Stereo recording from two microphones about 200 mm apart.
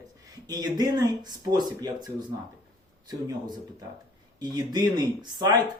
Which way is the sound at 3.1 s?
20° right (ahead or behind).